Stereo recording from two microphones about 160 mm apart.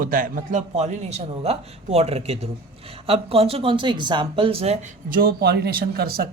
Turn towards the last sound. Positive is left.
turn(degrees=-80)